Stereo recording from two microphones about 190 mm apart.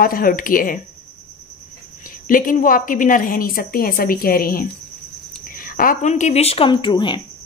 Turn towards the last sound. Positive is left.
turn(degrees=25)  # may be behind; listen again after turning